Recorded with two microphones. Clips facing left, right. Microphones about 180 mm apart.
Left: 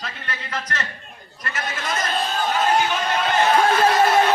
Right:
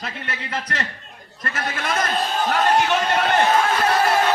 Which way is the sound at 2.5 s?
70° right (ahead or behind).